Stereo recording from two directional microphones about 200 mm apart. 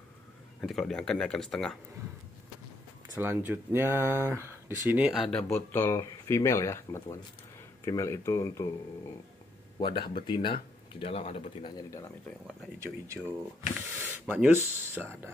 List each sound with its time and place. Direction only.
0.6 s speech: centre (ahead or behind)
3.2 s speech: 10° right (ahead or behind); by 8.6 s 15° left (ahead or behind)
9.8 s speech: 20° left (ahead or behind)
12.8 s speech: 15° right (ahead or behind)